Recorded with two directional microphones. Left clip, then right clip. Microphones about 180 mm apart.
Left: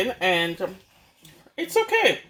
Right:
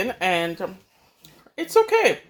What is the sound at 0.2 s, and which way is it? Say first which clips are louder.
Speech: right 1 dB; 15° right (ahead or behind).